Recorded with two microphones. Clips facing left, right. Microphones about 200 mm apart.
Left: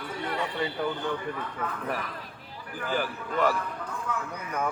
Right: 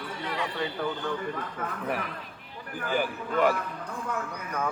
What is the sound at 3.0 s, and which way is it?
Speech, 15° right (ahead or behind).